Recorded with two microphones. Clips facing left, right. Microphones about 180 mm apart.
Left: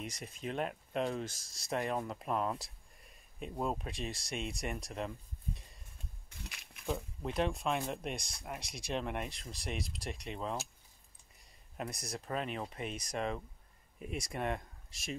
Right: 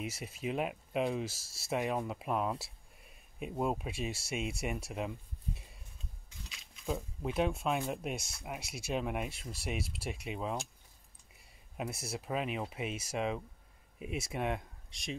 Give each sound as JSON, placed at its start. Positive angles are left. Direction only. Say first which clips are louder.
{"t": 0.0, "sound": "speech", "louder": "right 3 dB", "side_deg": -5}
{"t": 6.3, "sound": "a sound", "louder": "left 3 dB", "side_deg": 65}
{"t": 6.9, "sound": "speech", "louder": "right 1 dB", "side_deg": -5}